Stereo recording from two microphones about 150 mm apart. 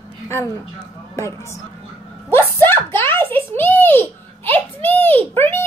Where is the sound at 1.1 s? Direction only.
20° left (ahead or behind).